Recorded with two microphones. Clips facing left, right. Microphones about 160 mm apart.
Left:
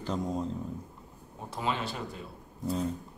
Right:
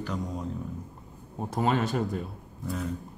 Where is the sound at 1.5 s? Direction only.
50° right (ahead or behind).